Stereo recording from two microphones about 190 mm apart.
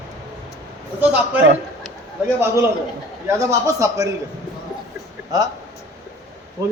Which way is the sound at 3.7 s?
15° right (ahead or behind).